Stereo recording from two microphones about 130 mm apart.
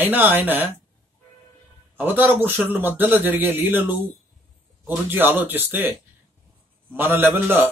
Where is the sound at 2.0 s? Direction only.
15° right (ahead or behind).